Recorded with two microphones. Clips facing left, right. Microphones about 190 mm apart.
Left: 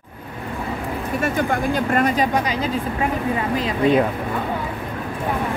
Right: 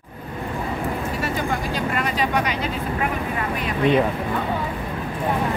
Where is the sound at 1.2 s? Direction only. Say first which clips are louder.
Left 7 dB; 50° left (ahead or behind).